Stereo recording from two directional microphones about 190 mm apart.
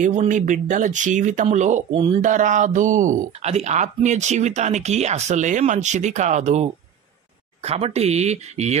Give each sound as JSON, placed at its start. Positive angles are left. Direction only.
{"t": 0.0, "sound": "speech", "side_deg": -40}